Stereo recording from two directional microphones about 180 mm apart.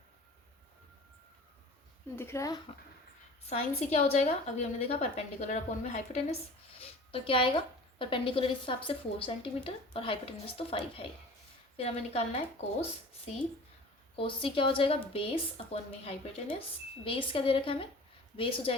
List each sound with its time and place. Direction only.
2.1 s speech: 15° left (ahead or behind)
3.5 s a woman's voice: 35° left (ahead or behind)
6.8 s a woman's voice: 30° left (ahead or behind)
14.2 s a woman's voice: 30° left (ahead or behind)